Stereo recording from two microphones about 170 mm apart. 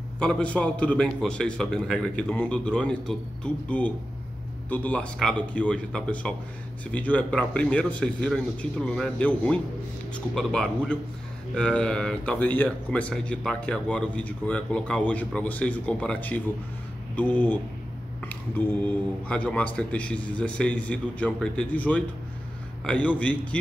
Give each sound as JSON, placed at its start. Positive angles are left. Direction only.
{"t": 0.2, "sound": "speech", "side_deg": 5}